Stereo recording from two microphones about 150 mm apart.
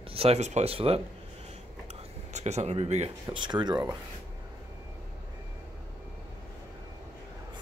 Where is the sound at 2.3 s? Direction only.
45° right (ahead or behind).